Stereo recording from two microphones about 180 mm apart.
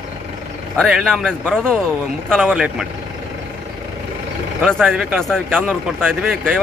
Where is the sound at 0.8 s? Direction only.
Centre (ahead or behind).